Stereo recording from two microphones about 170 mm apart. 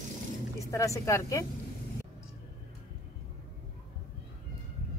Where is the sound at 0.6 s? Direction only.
20° left (ahead or behind).